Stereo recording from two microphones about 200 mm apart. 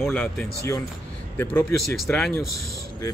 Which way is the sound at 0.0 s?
5° left (ahead or behind).